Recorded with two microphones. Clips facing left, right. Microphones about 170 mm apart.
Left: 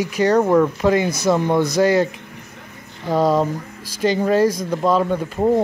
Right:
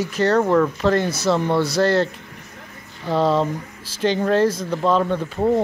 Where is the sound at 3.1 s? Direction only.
10° left (ahead or behind).